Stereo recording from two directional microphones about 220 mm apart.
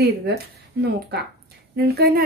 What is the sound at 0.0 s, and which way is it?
Speech, 45° right (ahead or behind).